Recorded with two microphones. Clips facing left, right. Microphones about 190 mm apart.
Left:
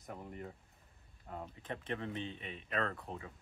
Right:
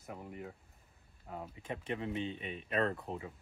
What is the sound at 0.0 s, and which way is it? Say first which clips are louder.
Speech: right 1 dB; 5° right (ahead or behind).